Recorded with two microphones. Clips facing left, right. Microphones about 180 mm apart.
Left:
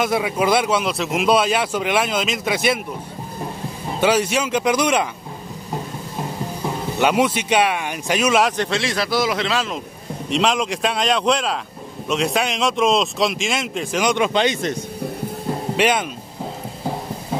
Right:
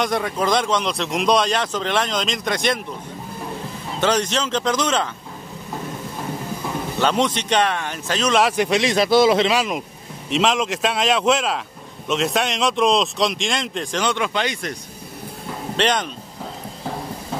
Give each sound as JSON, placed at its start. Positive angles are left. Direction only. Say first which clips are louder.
{"t": 0.0, "sound": "speech", "louder": "left 2 dB", "side_deg": 5}
{"t": 4.0, "sound": "speech", "louder": "left 2 dB", "side_deg": 10}
{"t": 7.0, "sound": "speech", "louder": "left 2 dB", "side_deg": 10}
{"t": 8.5, "sound": "a man's voice", "louder": "right 3 dB", "side_deg": -10}
{"t": 9.5, "sound": "a man's voice", "louder": "right 2 dB", "side_deg": -15}
{"t": 10.3, "sound": "speech", "louder": "even", "side_deg": 0}
{"t": 15.7, "sound": "speech", "louder": "left 1 dB", "side_deg": 10}